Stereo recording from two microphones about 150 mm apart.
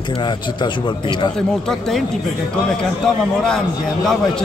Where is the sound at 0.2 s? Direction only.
30° left (ahead or behind).